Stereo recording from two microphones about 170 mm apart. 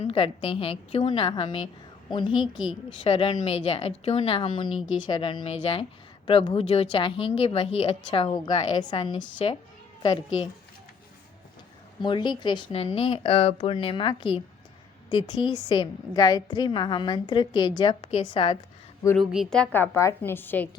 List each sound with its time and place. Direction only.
0.0 s a woman's voice: 35° left (ahead or behind)
2.4 s a woman's voice: 5° right (ahead or behind)
3.0 s a woman's voice: 35° left (ahead or behind)
12.0 s a woman's voice: 25° left (ahead or behind)
19.3 s a woman's voice: centre (ahead or behind)